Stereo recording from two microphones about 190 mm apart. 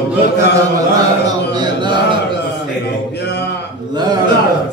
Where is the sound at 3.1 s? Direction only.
60° left (ahead or behind).